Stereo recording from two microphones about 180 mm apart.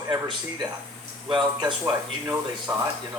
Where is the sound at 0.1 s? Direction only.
25° right (ahead or behind).